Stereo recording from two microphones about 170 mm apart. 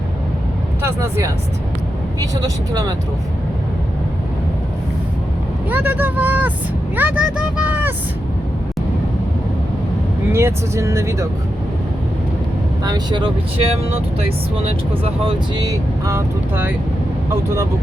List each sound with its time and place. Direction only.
0.8 s speech: 15° right (ahead or behind)
5.6 s speech: 10° right (ahead or behind)
10.3 s speech: 15° right (ahead or behind)
12.8 s speech: 25° right (ahead or behind)